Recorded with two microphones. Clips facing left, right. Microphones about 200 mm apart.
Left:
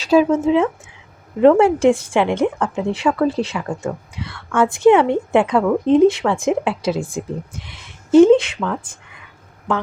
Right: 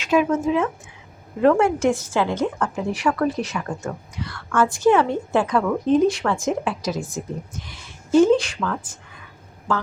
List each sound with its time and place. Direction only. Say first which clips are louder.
0.0 s a woman's voice: left 5 dB; 35° left (ahead or behind)